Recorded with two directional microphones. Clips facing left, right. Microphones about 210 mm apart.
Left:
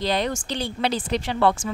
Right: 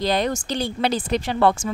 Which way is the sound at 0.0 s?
45° right (ahead or behind).